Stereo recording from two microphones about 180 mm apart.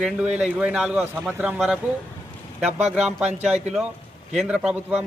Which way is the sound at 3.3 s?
40° right (ahead or behind).